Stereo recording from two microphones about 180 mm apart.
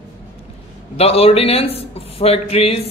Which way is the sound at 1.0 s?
35° left (ahead or behind).